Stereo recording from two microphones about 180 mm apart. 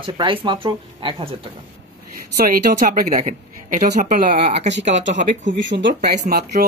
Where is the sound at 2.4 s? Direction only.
50° right (ahead or behind).